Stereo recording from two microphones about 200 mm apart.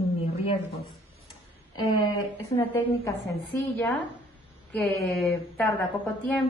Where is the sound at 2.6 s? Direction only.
15° left (ahead or behind).